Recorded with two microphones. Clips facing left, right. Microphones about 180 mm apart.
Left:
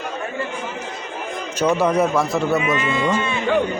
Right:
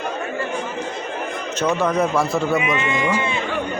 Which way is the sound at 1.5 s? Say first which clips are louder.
Left 2 dB; 10° left (ahead or behind).